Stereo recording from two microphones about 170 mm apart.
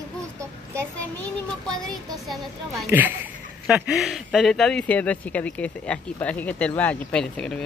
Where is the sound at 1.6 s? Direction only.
5° left (ahead or behind).